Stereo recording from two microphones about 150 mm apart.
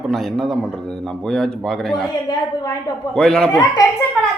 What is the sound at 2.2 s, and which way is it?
Speech, 25° left (ahead or behind).